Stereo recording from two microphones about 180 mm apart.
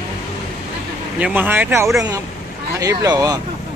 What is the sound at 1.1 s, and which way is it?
Speech, 10° right (ahead or behind).